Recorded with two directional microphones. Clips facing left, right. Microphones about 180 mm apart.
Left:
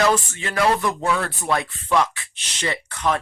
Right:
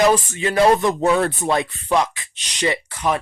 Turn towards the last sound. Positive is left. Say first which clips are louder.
# right 2 dB
turn(degrees=-10)  # may be behind; listen again after turning